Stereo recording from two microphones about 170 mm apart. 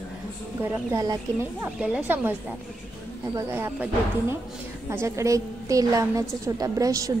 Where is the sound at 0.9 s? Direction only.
20° right (ahead or behind).